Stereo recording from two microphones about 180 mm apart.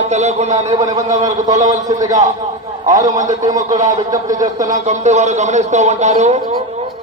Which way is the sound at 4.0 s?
20° right (ahead or behind).